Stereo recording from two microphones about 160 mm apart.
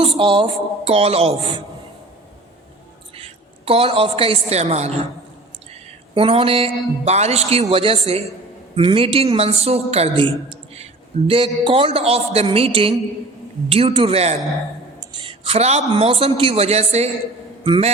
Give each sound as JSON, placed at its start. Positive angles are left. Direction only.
{"t": 0.0, "sound": "a man's voice", "side_deg": -30}
{"t": 3.2, "sound": "a woman's voice", "side_deg": -40}
{"t": 6.1, "sound": "a man's voice", "side_deg": -35}